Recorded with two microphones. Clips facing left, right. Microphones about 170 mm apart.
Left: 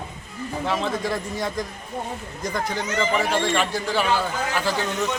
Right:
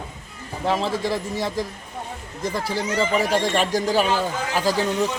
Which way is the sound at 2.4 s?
30° right (ahead or behind).